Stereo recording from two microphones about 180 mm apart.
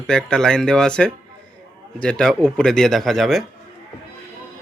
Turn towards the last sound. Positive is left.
turn(degrees=0)  # may be behind; listen again after turning